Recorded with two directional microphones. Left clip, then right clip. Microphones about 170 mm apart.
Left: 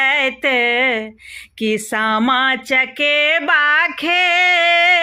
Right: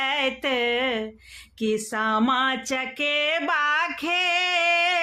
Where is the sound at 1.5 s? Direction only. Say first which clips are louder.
Left 7 dB; 40° left (ahead or behind).